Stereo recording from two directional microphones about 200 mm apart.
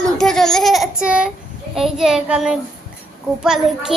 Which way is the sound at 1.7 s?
Centre (ahead or behind).